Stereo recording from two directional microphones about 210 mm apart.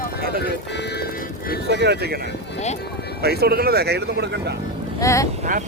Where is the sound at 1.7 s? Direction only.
55° right (ahead or behind).